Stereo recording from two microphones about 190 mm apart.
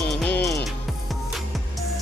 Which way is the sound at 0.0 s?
5° left (ahead or behind).